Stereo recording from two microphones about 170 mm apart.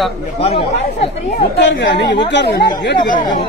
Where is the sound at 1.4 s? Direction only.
90° left.